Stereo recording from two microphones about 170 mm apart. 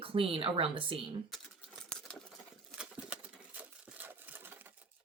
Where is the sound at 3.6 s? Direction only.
10° right (ahead or behind).